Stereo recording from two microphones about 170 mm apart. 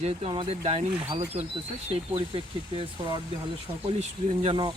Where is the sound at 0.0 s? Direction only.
35° right (ahead or behind).